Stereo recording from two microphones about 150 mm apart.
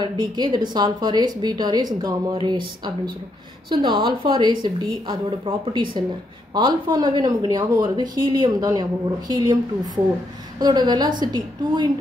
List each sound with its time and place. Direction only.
0.0 s speech: 30° right (ahead or behind)
10.6 s speech: 30° right (ahead or behind)